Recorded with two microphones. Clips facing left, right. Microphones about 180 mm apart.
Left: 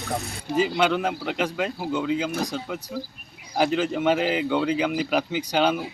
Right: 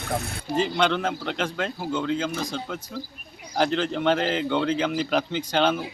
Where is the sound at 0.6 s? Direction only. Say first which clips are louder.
Left 1 dB; 5° left (ahead or behind).